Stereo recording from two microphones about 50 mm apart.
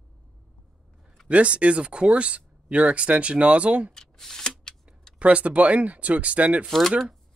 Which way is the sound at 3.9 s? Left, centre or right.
Centre.